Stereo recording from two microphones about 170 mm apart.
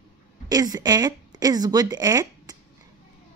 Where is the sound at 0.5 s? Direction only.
20° right (ahead or behind).